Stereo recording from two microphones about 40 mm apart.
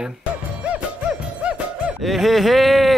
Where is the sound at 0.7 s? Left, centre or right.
Right.